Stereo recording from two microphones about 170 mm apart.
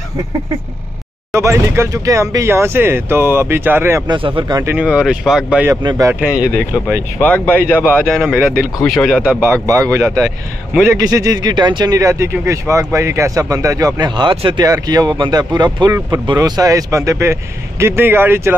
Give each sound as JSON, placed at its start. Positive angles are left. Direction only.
{"t": 1.3, "sound": "speech", "side_deg": -15}
{"t": 4.7, "sound": "speech", "side_deg": -5}
{"t": 5.7, "sound": "speech", "side_deg": -25}
{"t": 6.1, "sound": "speech", "side_deg": -10}
{"t": 7.2, "sound": "speech", "side_deg": 10}
{"t": 8.4, "sound": "speech", "side_deg": -10}
{"t": 8.8, "sound": "speech", "side_deg": 5}
{"t": 9.7, "sound": "speech", "side_deg": -20}